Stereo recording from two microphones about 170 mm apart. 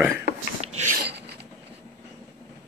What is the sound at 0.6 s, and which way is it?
Dishes, 40° right (ahead or behind).